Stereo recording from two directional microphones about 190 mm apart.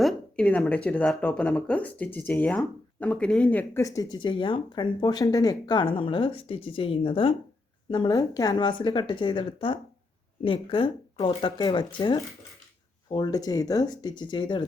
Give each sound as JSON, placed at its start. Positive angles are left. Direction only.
{"t": 0.0, "sound": "speech", "side_deg": 5}